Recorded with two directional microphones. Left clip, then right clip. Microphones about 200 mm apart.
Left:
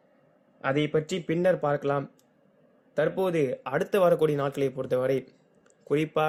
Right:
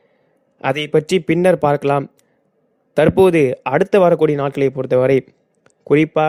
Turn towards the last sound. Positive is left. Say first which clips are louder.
# right 12 dB
turn(degrees=-40)  # may be behind; listen again after turning